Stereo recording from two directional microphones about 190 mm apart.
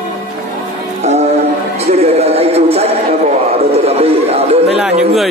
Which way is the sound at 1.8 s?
35° right (ahead or behind).